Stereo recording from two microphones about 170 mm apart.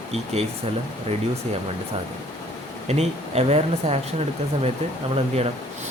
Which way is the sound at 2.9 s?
40° right (ahead or behind).